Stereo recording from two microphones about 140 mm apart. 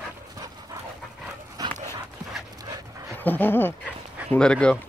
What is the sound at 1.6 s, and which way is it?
Dog, 25° right (ahead or behind).